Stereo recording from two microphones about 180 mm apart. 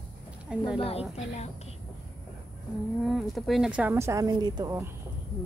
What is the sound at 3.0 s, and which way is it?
A woman's voice, centre (ahead or behind).